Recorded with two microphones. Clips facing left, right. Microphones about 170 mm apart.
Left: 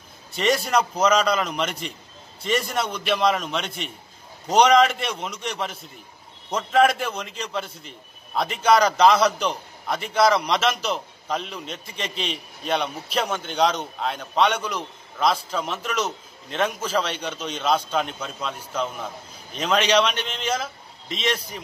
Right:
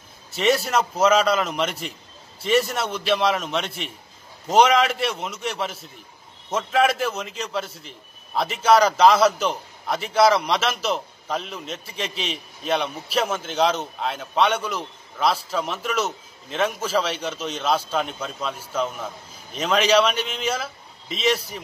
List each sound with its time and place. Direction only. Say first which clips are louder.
0.3 s a man's voice: right 1 dB; centre (ahead or behind)